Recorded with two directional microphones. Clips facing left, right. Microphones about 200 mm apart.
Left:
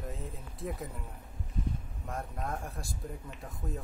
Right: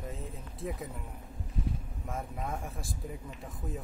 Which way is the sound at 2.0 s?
Centre (ahead or behind).